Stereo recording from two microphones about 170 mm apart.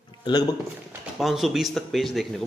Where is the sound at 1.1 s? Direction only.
Centre (ahead or behind).